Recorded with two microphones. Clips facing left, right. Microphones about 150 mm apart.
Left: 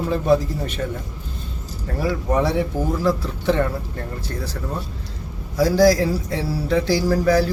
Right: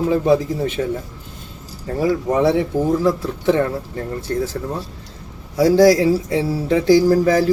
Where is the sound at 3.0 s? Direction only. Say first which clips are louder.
Right 3 dB; 20° right (ahead or behind).